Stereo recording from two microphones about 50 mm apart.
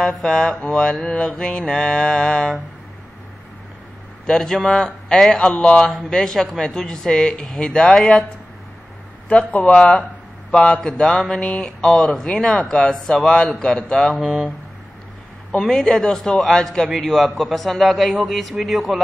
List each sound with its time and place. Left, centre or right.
0.0 s speech: centre
1.0 s mantra: centre
1.7 s speech: centre
4.3 s speech: centre
9.3 s mantra: left
10.5 s speech: centre
15.6 s a man's voice: centre